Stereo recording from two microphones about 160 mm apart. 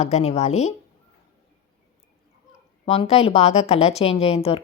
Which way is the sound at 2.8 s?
40° left (ahead or behind).